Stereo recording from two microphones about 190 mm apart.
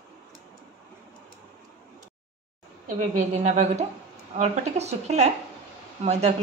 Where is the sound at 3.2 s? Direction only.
40° right (ahead or behind).